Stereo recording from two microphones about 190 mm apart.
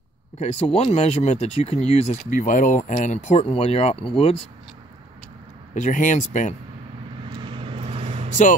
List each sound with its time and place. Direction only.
0.4 s speech: 35° left (ahead or behind)
5.8 s speech: 40° left (ahead or behind)
7.4 s vehicle: 25° right (ahead or behind)